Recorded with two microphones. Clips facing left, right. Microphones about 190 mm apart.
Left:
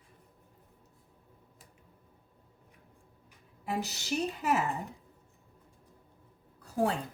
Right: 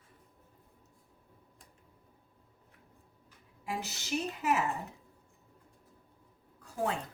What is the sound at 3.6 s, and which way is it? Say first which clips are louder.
Speech: left 3 dB; 40° left (ahead or behind).